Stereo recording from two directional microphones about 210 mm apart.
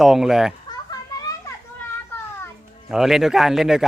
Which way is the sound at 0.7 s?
20° left (ahead or behind).